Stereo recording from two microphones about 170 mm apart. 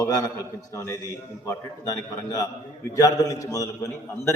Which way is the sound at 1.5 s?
20° left (ahead or behind).